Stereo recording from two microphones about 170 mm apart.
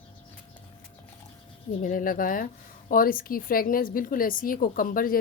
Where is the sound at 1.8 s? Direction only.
55° left (ahead or behind).